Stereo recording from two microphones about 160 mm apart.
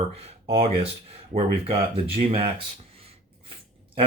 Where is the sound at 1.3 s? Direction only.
35° right (ahead or behind).